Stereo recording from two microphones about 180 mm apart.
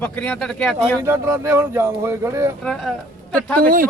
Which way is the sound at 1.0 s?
15° right (ahead or behind).